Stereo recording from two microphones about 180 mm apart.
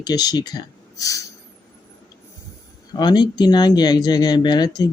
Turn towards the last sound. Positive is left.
turn(degrees=20)  # may be behind; listen again after turning